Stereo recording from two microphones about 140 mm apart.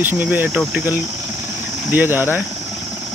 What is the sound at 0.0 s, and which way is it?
Speech, 10° right (ahead or behind).